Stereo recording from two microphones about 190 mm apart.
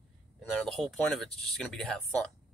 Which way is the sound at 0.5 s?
Centre (ahead or behind).